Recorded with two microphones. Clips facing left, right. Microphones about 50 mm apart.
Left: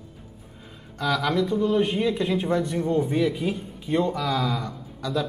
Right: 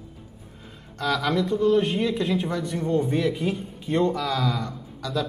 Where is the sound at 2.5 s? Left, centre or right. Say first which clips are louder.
Left 4 dB; left.